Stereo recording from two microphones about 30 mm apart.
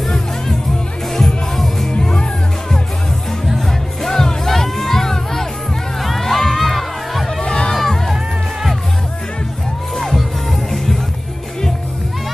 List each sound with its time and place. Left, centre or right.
1.1 s music: centre
1.9 s music: left
3.5 s music: centre
6.0 s crowd: centre
7.4 s crowd: left
7.7 s crowd: centre
9.9 s music: centre